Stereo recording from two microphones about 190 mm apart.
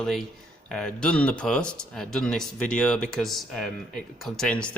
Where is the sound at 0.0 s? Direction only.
Centre (ahead or behind).